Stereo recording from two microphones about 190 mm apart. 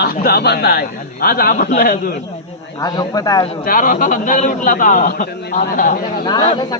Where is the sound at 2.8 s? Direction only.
20° left (ahead or behind).